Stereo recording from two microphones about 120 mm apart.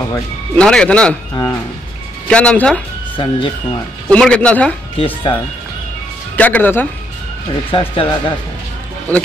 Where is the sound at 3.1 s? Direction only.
45° left (ahead or behind).